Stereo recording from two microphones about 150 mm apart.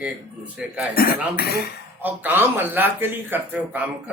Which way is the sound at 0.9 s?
90° left.